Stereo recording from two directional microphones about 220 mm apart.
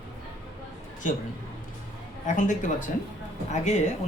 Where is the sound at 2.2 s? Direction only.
35° left (ahead or behind).